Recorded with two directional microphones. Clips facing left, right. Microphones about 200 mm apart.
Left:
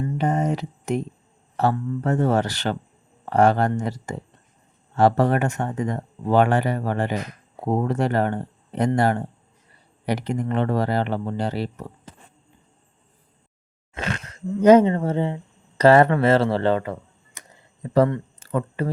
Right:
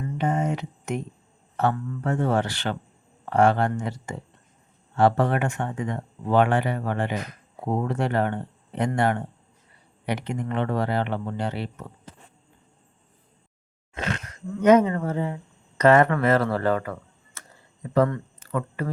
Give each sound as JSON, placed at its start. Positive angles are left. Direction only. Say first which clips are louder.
{"t": 0.0, "sound": "speech", "louder": "left 3 dB", "side_deg": 35}
{"t": 14.3, "sound": "speech", "louder": "left 4 dB", "side_deg": 30}